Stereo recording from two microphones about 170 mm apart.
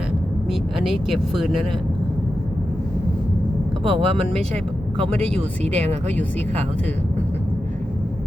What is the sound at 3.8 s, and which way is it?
Speech, 35° right (ahead or behind).